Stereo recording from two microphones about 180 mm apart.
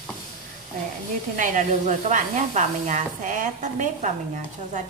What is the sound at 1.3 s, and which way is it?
Speech, 45° right (ahead or behind).